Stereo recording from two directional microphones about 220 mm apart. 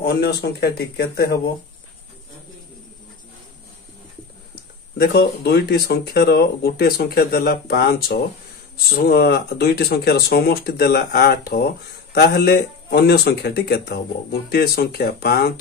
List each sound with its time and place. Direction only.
0.0 s speech: 45° left (ahead or behind)
4.9 s speech: 45° left (ahead or behind)